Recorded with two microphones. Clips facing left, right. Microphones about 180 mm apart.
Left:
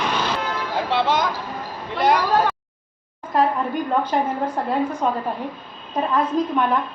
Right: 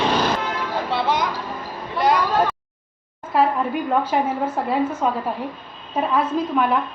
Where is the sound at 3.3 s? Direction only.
5° right (ahead or behind).